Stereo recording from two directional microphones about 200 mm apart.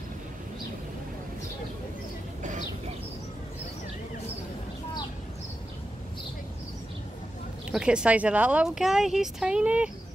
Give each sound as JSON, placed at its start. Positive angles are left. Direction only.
{"t": 7.7, "sound": "speech", "side_deg": -5}